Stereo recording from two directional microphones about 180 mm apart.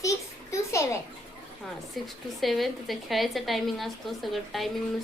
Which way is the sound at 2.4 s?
Centre (ahead or behind).